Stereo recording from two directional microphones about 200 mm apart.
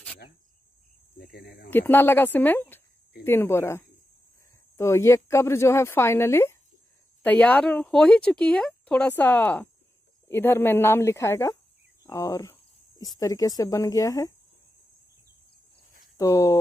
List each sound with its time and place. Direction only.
1.1 s cricket: 50° left (ahead or behind)
1.7 s speech: 10° left (ahead or behind)
16.2 s speech: 15° left (ahead or behind)